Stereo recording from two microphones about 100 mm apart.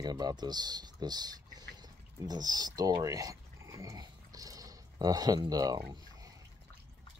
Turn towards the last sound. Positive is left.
turn(degrees=-40)  # may be behind; listen again after turning